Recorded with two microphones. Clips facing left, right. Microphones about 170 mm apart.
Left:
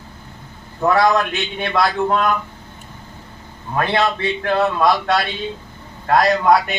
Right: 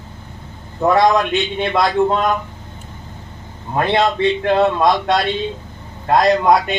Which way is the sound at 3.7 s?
20° right (ahead or behind).